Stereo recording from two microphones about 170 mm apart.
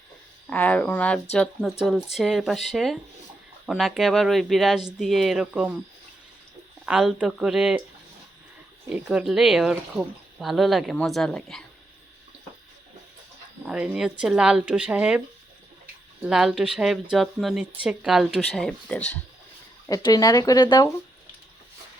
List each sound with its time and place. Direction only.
0.5 s speech: 10° left (ahead or behind)
6.8 s speech: 5° right (ahead or behind)
8.9 s speech: centre (ahead or behind)
13.7 s speech: 5° right (ahead or behind)
16.2 s speech: 5° right (ahead or behind)
19.9 s speech: 20° left (ahead or behind)